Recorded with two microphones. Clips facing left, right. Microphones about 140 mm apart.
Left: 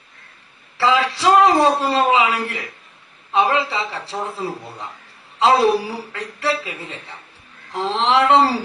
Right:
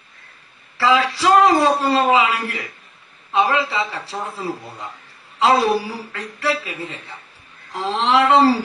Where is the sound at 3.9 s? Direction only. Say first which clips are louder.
Left 1 dB; centre (ahead or behind).